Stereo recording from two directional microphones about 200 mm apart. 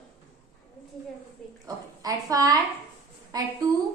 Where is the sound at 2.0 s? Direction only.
20° right (ahead or behind).